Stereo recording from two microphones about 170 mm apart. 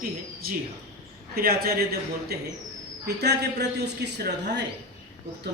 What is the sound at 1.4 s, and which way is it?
A man's voice, 65° right (ahead or behind).